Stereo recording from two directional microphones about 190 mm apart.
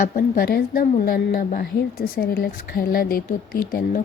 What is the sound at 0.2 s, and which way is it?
Speech, 55° left (ahead or behind).